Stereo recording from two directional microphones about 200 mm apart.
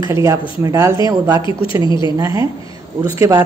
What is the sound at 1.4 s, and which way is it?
Speech, 25° left (ahead or behind).